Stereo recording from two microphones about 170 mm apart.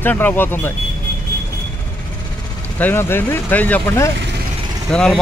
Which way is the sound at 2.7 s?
10° left (ahead or behind).